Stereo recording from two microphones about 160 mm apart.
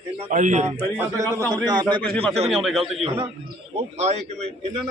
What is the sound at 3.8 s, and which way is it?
A man's voice, 45° right (ahead or behind).